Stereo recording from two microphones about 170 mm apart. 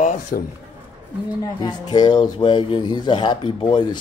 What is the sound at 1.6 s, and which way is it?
Speech, 25° left (ahead or behind).